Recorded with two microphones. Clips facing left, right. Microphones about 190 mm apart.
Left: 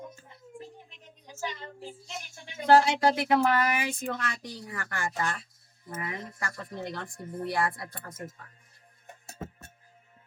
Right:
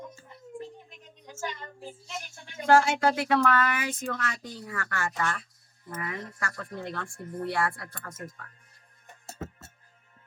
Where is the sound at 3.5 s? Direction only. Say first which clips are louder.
Even; 20° left (ahead or behind).